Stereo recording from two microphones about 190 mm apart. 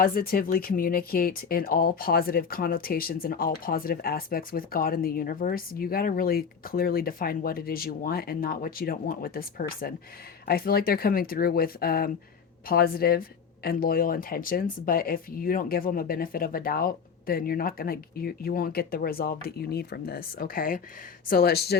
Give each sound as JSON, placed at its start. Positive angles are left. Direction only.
{"t": 0.0, "sound": "speech", "side_deg": 50}